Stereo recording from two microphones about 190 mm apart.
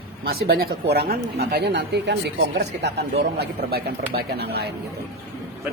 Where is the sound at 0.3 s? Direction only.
55° right (ahead or behind).